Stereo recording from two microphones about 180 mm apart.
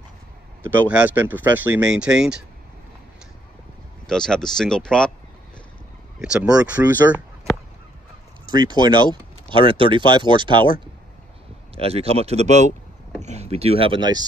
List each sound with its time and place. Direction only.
0.6 s speech: 10° right (ahead or behind)
4.1 s speech: 5° left (ahead or behind)
6.2 s speech: 5° right (ahead or behind)
8.5 s speech: 25° right (ahead or behind)
11.7 s speech: 35° right (ahead or behind)